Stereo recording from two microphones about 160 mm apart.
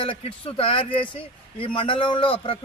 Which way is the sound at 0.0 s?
35° left (ahead or behind).